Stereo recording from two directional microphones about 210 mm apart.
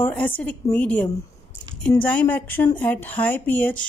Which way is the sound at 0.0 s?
10° left (ahead or behind).